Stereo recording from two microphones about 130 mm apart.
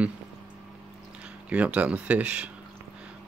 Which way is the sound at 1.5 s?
10° right (ahead or behind).